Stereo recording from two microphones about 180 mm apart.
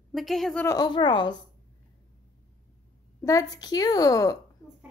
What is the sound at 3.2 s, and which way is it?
A woman's voice, 20° left (ahead or behind).